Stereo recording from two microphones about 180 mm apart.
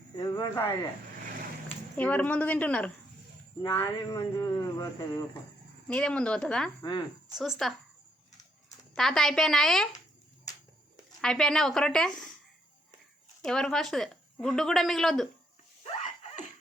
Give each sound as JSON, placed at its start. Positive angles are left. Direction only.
{"t": 0.2, "sound": "speech", "side_deg": 20}
{"t": 2.0, "sound": "a woman's voice", "side_deg": 10}
{"t": 3.6, "sound": "speech", "side_deg": 20}
{"t": 5.9, "sound": "a woman's voice", "side_deg": 5}
{"t": 9.0, "sound": "a woman's voice", "side_deg": 0}
{"t": 11.2, "sound": "a woman's voice", "side_deg": 5}
{"t": 13.4, "sound": "a woman's voice", "side_deg": 5}